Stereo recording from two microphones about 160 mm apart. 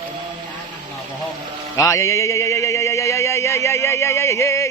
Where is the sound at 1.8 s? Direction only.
20° left (ahead or behind).